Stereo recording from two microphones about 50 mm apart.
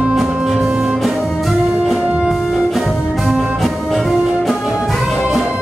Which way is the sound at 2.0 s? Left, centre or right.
Right.